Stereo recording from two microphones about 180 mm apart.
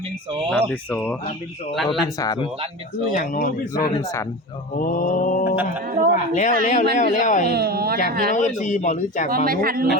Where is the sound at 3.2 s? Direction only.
55° left (ahead or behind).